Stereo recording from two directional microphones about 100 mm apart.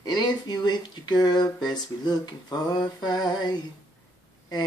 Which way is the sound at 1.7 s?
45° left (ahead or behind).